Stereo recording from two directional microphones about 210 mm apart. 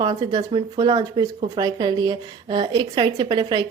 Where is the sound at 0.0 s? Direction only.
20° right (ahead or behind).